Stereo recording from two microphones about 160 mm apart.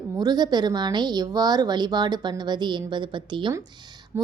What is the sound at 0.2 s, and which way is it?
A woman's voice, 25° right (ahead or behind).